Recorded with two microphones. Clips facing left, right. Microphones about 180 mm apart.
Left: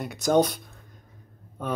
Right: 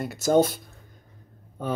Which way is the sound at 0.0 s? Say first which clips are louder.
Right 1 dB; 5° right (ahead or behind).